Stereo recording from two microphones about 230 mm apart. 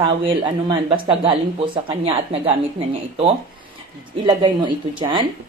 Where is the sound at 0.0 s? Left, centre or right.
Right.